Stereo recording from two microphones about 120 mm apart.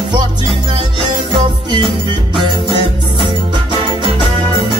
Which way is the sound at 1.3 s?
45° right (ahead or behind).